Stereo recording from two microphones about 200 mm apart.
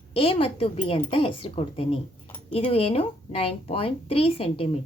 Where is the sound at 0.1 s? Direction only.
30° left (ahead or behind).